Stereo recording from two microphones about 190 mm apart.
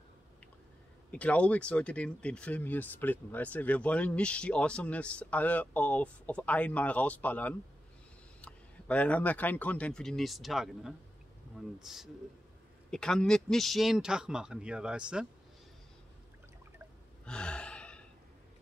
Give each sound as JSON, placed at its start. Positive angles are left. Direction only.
{"t": 1.1, "sound": "a man's voice", "side_deg": 5}
{"t": 17.2, "sound": "gasp", "side_deg": 5}